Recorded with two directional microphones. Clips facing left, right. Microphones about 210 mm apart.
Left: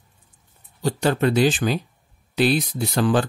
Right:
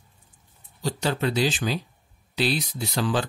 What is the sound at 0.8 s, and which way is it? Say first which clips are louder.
Speech: left 6 dB; 55° left (ahead or behind).